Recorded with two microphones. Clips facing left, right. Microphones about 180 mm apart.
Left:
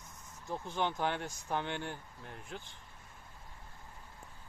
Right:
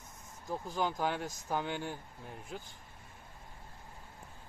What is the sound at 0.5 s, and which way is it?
Speech, centre (ahead or behind).